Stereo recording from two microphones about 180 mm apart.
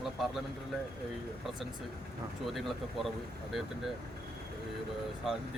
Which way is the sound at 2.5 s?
Centre (ahead or behind).